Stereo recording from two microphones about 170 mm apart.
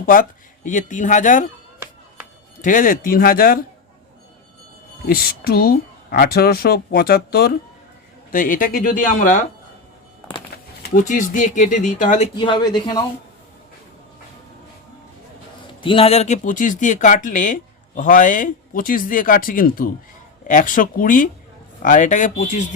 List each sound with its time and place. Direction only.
0.0 s speech: 55° left (ahead or behind)
2.6 s speech: 50° left (ahead or behind)
5.0 s speech: 60° left (ahead or behind)
8.3 s speech: 50° left (ahead or behind)
10.5 s a sound: 70° left (ahead or behind)
10.9 s speech: 50° left (ahead or behind)
12.4 s speech: 30° left (ahead or behind)
15.8 s speech: 30° left (ahead or behind); by 22.6 s 50° left (ahead or behind)